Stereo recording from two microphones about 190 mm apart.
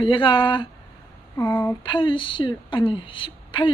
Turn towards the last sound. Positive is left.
turn(degrees=25)  # may be behind; listen again after turning